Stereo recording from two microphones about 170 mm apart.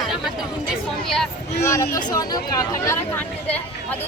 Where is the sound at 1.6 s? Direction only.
15° left (ahead or behind).